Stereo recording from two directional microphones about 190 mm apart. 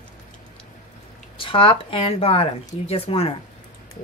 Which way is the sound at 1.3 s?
30° left (ahead or behind).